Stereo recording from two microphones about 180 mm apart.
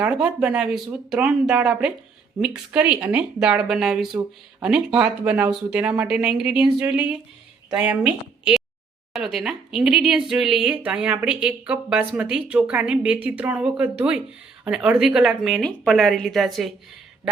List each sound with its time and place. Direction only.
0.0 s a woman's voice: 5° right (ahead or behind)